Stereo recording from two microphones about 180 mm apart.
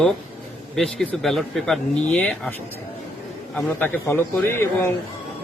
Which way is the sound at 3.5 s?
10° left (ahead or behind).